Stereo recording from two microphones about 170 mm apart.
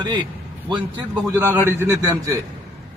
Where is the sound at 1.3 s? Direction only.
15° right (ahead or behind).